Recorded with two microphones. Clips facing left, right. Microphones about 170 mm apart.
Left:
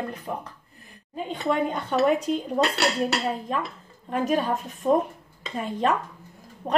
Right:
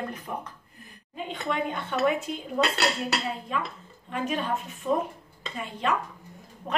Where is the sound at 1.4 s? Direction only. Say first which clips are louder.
Left 5 dB; 35° left (ahead or behind).